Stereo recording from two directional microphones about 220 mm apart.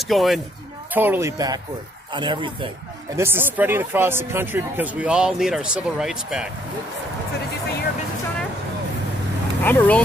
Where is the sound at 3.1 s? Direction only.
10° right (ahead or behind).